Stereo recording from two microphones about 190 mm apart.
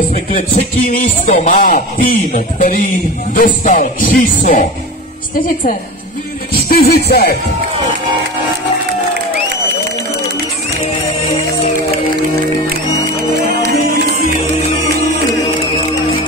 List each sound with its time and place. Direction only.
0.6 s speech: 45° left (ahead or behind)
6.5 s music: 55° left (ahead or behind)
13.1 s music: 55° right (ahead or behind)